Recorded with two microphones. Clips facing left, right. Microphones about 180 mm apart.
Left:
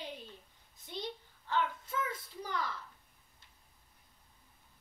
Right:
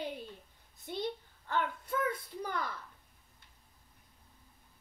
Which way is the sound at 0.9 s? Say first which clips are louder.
Right 5 dB; 55° right (ahead or behind).